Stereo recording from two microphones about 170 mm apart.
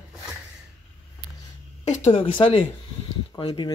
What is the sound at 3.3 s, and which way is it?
Speech, 30° left (ahead or behind).